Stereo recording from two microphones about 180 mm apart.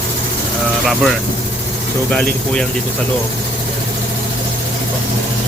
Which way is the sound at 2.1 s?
5° left (ahead or behind).